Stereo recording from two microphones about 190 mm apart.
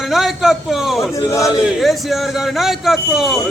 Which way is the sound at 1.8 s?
Centre (ahead or behind).